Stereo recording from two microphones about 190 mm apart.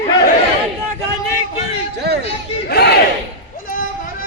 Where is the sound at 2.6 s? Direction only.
60° left (ahead or behind).